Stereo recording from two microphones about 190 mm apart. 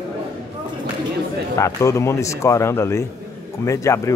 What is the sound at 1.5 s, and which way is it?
Speech, 15° left (ahead or behind).